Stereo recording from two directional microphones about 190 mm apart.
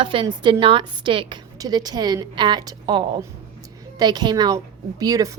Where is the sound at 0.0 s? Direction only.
25° right (ahead or behind).